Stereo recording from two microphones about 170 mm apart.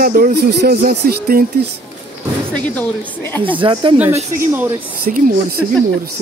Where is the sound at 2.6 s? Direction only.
10° left (ahead or behind).